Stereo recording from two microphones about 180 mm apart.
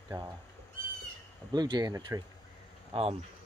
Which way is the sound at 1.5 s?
25° right (ahead or behind).